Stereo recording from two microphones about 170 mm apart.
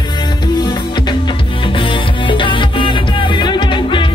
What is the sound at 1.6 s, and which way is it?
Music, 30° left (ahead or behind).